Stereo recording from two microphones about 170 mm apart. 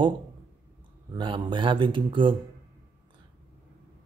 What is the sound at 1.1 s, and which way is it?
Speech, 25° right (ahead or behind).